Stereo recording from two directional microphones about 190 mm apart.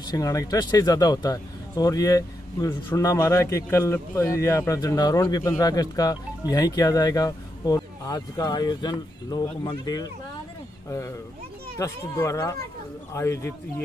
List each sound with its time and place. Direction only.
0.0 s speech: 20° left (ahead or behind)